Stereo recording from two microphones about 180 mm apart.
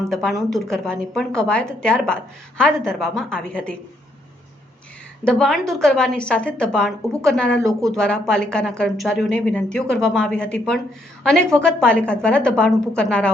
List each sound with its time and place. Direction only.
0.1 s a woman's voice: 5° left (ahead or behind)
5.2 s a woman's voice: 5° left (ahead or behind)